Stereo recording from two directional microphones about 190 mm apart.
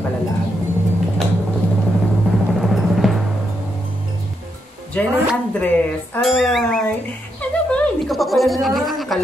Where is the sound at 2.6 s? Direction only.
Centre (ahead or behind).